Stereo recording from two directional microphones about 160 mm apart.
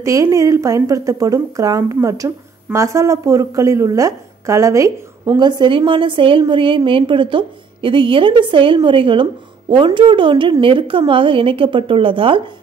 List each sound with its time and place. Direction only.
0.0 s speech: 20° right (ahead or behind)